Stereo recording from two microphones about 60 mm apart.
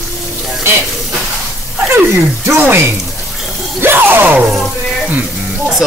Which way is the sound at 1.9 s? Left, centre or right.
Right.